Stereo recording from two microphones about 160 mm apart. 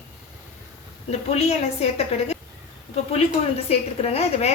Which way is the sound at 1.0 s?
40° left (ahead or behind).